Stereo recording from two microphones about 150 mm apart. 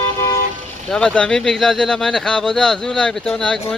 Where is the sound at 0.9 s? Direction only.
5° left (ahead or behind).